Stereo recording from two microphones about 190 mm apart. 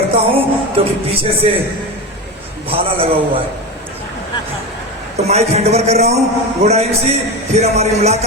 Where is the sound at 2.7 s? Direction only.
30° right (ahead or behind).